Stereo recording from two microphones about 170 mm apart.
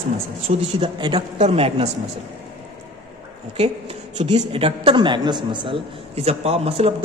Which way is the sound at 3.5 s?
35° right (ahead or behind).